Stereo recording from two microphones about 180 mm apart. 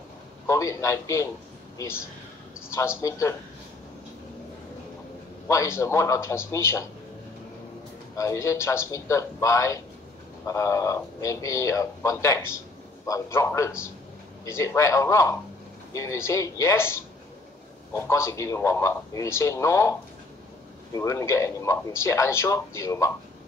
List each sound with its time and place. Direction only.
0.5 s a man's voice: 15° left (ahead or behind)
2.7 s a man's voice: 15° left (ahead or behind)
5.5 s a man's voice: 15° left (ahead or behind)
8.2 s a man's voice: 15° left (ahead or behind)